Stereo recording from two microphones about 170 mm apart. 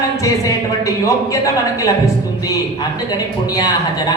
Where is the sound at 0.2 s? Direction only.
20° left (ahead or behind).